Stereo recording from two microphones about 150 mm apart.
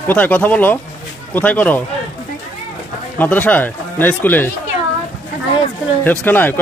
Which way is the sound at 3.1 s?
10° left (ahead or behind).